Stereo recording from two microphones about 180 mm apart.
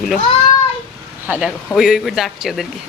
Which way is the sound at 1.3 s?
5° right (ahead or behind).